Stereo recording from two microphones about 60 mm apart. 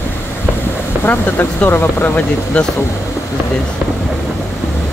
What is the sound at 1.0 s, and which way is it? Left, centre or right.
Speech, left.